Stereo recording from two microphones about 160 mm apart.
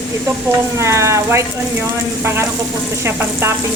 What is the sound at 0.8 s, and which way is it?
Speech, 15° right (ahead or behind).